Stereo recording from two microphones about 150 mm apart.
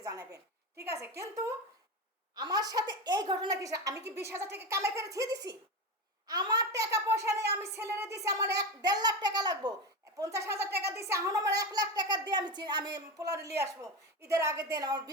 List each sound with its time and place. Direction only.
0.0 s a woman's voice: 25° right (ahead or behind)
14.3 s a child's voice: 20° right (ahead or behind)